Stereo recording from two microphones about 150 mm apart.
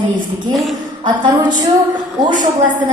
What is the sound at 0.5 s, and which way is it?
Speech, centre (ahead or behind).